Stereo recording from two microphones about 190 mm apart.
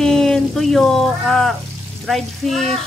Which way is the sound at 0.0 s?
5° left (ahead or behind).